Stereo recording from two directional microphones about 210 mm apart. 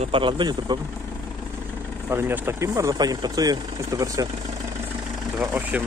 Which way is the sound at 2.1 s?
10° right (ahead or behind).